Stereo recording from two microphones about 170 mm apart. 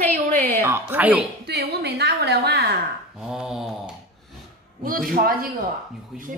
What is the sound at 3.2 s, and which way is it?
Speech, 5° right (ahead or behind).